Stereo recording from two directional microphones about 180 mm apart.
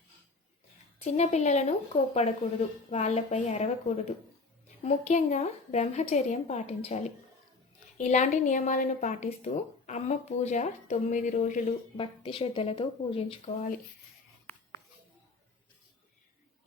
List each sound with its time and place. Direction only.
0.9 s speech: 35° left (ahead or behind)
11.9 s speech: 30° left (ahead or behind)